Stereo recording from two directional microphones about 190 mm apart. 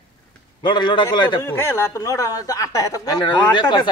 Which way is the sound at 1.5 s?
10° left (ahead or behind).